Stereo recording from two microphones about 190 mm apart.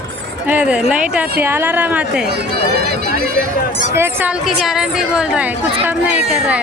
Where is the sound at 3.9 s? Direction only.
10° right (ahead or behind).